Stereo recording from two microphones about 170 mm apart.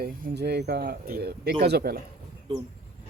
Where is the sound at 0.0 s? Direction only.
65° right (ahead or behind).